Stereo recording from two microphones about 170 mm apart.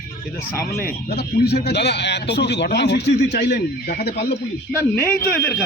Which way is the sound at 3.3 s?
65° left (ahead or behind).